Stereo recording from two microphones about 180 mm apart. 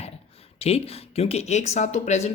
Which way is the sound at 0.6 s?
35° left (ahead or behind).